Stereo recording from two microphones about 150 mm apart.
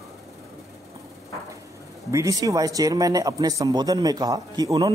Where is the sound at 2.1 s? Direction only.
20° right (ahead or behind).